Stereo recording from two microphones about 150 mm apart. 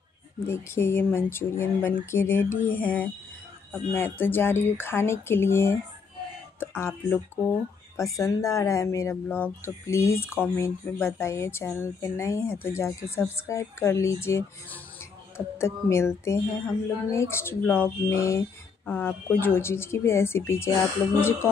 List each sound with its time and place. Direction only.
0.5 s speech: 15° left (ahead or behind)